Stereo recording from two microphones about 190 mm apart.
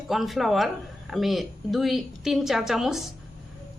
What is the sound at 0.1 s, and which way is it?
Speech, centre (ahead or behind).